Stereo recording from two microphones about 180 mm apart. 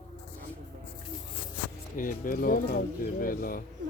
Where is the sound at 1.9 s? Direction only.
50° left (ahead or behind).